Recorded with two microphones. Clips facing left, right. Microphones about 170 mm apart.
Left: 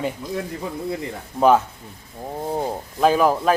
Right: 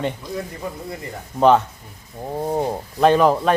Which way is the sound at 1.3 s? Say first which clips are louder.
Right 1 dB; 5° left (ahead or behind).